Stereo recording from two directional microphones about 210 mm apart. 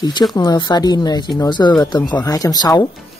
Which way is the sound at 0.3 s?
20° left (ahead or behind).